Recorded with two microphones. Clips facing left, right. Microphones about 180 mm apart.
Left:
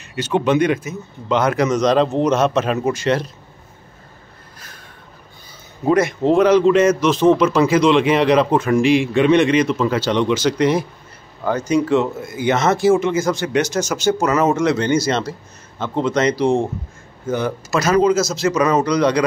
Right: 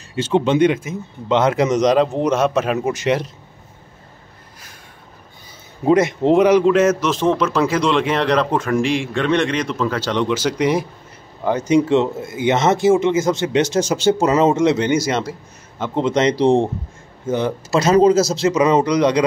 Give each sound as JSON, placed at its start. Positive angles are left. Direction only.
{"t": 0.1, "sound": "speech", "side_deg": -25}
{"t": 5.9, "sound": "a man's voice", "side_deg": -20}
{"t": 11.4, "sound": "speech", "side_deg": -25}